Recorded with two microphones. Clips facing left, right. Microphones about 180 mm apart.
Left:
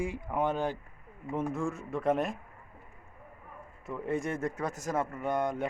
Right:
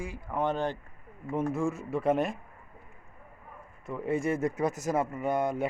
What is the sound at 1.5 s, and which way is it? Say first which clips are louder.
Speech: right 3 dB; 5° right (ahead or behind).